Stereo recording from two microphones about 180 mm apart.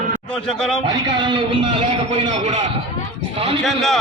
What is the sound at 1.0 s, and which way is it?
Speech, 25° right (ahead or behind).